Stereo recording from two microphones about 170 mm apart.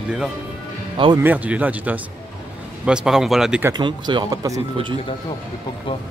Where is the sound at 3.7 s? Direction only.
25° right (ahead or behind).